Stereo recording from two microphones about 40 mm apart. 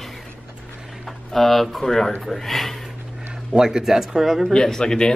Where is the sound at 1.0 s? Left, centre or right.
Centre.